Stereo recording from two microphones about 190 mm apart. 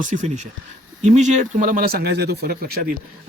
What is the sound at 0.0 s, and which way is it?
Speech, 40° right (ahead or behind).